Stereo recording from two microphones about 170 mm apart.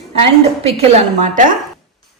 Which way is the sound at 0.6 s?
40° right (ahead or behind).